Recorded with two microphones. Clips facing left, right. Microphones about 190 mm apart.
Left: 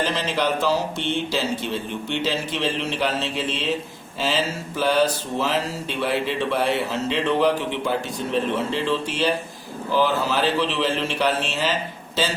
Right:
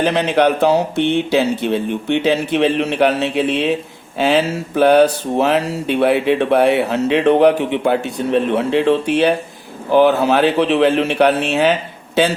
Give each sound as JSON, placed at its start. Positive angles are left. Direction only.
{"t": 0.0, "sound": "speech", "side_deg": -60}